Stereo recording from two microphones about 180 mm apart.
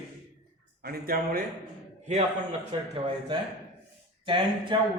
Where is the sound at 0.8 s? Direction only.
55° right (ahead or behind).